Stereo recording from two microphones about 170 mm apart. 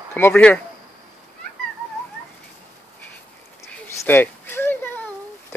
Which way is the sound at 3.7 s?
10° left (ahead or behind).